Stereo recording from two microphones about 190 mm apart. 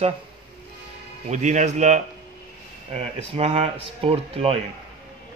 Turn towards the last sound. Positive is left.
turn(degrees=-30)  # may be behind; listen again after turning